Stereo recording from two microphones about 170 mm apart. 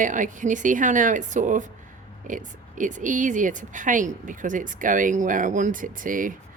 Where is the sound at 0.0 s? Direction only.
50° right (ahead or behind).